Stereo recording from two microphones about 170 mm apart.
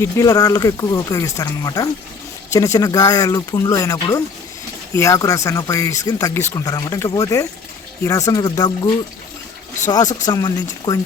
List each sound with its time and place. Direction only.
0.0 s speech: 20° left (ahead or behind)
10.2 s speech: 25° left (ahead or behind)